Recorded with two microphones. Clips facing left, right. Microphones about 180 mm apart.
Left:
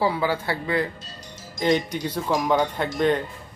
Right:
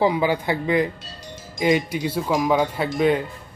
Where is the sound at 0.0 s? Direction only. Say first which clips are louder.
Right 3 dB; 15° right (ahead or behind).